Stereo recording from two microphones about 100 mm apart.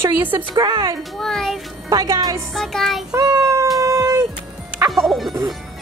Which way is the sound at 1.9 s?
35° right (ahead or behind).